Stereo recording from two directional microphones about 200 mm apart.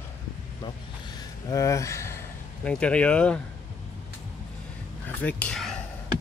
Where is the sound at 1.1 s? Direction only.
15° left (ahead or behind).